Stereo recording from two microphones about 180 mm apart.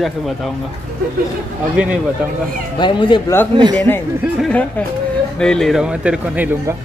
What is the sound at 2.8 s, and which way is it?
Speech, 25° left (ahead or behind).